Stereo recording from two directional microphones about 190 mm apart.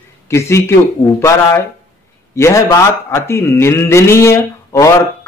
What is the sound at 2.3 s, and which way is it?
A man's voice, 15° left (ahead or behind).